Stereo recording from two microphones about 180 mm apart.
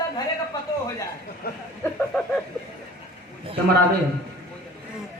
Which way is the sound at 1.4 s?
60° left (ahead or behind).